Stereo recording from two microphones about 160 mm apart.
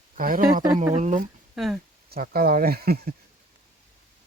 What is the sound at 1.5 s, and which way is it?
Speech, centre (ahead or behind).